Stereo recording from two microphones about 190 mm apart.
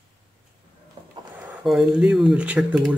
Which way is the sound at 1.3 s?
5° right (ahead or behind).